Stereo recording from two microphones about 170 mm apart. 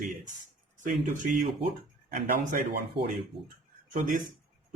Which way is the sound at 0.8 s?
50° right (ahead or behind).